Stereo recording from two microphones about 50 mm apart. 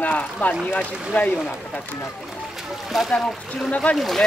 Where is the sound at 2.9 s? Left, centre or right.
Centre.